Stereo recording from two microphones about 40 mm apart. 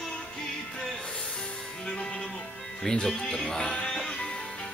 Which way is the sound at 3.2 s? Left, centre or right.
Left.